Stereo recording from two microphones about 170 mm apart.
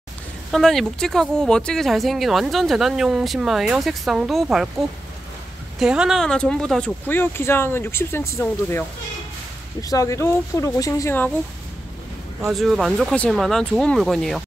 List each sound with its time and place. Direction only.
0.5 s speech: centre (ahead or behind)
12.4 s speech: centre (ahead or behind)